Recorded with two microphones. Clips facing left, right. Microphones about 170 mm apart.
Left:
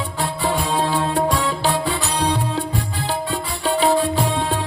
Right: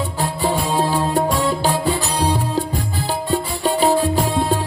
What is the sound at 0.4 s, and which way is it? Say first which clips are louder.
Music: right 2 dB; 10° right (ahead or behind).